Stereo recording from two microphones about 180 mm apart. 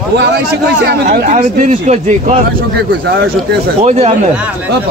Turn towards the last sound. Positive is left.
turn(degrees=-40)  # may be behind; listen again after turning